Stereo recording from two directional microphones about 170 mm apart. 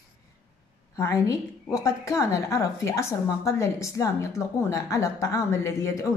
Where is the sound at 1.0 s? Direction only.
20° left (ahead or behind).